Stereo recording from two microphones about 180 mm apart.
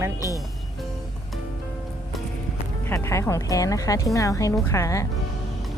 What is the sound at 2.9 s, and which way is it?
Speech, 15° left (ahead or behind).